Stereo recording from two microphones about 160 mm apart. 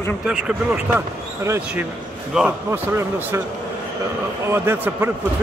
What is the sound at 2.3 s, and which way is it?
Speech, 5° right (ahead or behind).